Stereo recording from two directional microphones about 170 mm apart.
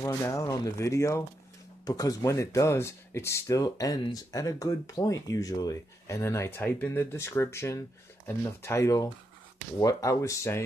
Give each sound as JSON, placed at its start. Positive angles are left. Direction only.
{"t": 0.0, "sound": "speech", "side_deg": 20}